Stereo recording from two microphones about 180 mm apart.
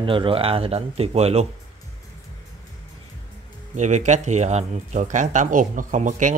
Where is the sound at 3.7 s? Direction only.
40° right (ahead or behind).